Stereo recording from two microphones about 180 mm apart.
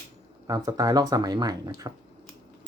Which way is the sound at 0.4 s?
20° right (ahead or behind).